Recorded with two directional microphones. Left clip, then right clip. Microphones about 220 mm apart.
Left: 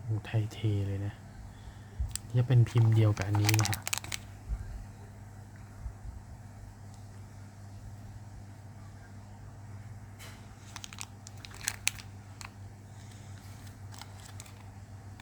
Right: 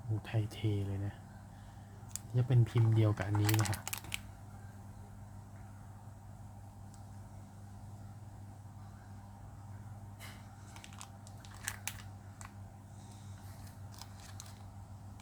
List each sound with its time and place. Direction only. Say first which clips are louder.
0.2 s speech: left 3 dB; 10° left (ahead or behind)
2.1 s speech: left 4 dB; 15° left (ahead or behind)
3.4 s speech: left 6 dB; 25° left (ahead or behind)
10.8 s crunch: left 6 dB; 30° left (ahead or behind)